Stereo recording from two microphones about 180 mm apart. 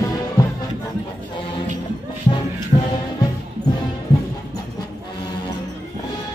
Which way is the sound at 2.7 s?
35° left (ahead or behind).